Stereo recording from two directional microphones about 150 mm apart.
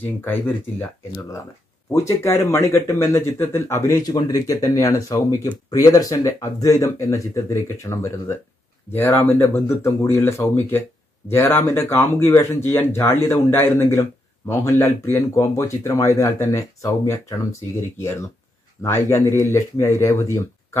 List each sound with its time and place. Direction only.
0.0 s speech: 15° left (ahead or behind)